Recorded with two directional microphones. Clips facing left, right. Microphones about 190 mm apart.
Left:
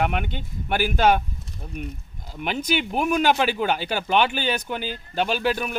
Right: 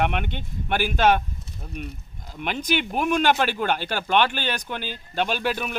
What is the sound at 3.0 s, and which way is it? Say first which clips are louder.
Speech: left 1 dB; 5° left (ahead or behind).